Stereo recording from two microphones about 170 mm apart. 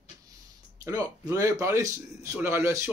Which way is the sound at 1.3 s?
20° right (ahead or behind).